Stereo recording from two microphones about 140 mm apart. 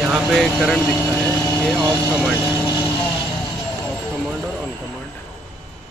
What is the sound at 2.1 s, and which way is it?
Speech, 10° right (ahead or behind).